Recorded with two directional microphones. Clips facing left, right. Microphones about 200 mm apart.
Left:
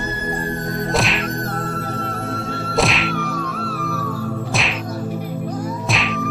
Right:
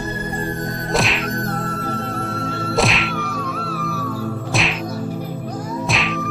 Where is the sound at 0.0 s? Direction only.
Centre (ahead or behind).